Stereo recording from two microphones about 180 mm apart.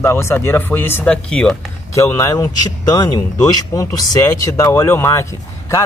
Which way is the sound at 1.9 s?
15° left (ahead or behind).